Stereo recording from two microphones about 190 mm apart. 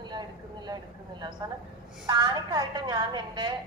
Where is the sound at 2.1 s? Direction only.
20° right (ahead or behind).